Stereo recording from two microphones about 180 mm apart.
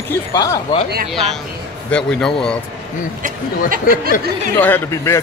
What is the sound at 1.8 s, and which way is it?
Speech, 5° left (ahead or behind).